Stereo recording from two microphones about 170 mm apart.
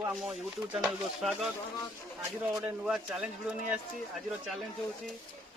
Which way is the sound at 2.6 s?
5° right (ahead or behind).